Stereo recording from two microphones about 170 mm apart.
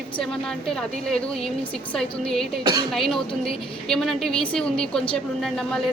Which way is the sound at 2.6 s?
25° right (ahead or behind).